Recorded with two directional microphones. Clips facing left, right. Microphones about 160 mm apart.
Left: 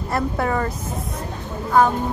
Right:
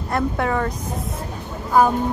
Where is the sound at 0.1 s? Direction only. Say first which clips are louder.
Right 1 dB; centre (ahead or behind).